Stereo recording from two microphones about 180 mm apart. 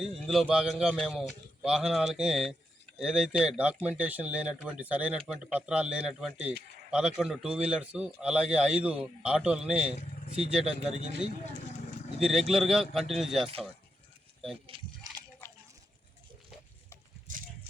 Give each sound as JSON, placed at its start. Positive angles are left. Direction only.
{"t": 0.3, "sound": "speech", "side_deg": -5}
{"t": 10.8, "sound": "speech", "side_deg": -40}
{"t": 12.2, "sound": "speech", "side_deg": 0}
{"t": 14.7, "sound": "speech", "side_deg": -30}
{"t": 15.4, "sound": "a sound", "side_deg": 15}